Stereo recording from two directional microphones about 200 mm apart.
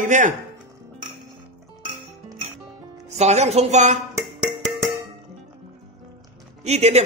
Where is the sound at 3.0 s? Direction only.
35° right (ahead or behind).